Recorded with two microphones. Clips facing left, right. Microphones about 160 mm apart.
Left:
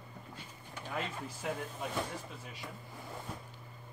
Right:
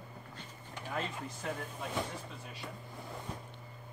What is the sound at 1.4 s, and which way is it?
Speech, 5° left (ahead or behind).